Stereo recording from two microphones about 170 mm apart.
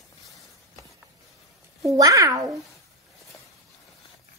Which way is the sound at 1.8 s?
20° right (ahead or behind).